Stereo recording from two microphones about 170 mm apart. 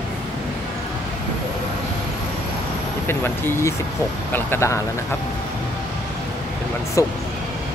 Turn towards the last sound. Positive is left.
turn(degrees=20)  # may be behind; listen again after turning